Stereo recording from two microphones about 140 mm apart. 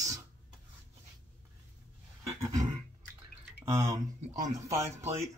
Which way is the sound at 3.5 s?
20° right (ahead or behind).